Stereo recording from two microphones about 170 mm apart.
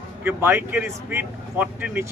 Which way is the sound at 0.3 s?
15° right (ahead or behind).